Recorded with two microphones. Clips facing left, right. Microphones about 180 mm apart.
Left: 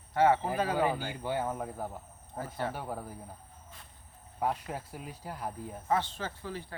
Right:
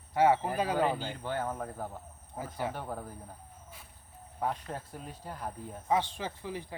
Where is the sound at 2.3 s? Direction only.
10° right (ahead or behind).